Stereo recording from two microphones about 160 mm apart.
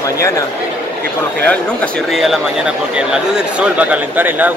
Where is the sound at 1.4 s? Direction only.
5° left (ahead or behind).